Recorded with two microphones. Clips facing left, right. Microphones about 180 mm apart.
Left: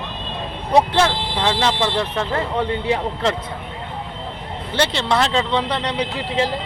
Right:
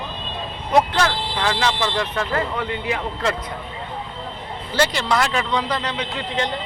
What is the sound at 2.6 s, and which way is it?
Speech, 30° left (ahead or behind).